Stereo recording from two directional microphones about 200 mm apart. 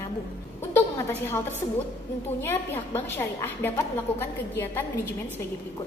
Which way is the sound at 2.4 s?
10° left (ahead or behind).